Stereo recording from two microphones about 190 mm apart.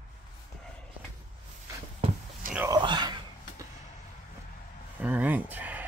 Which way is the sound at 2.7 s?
25° right (ahead or behind).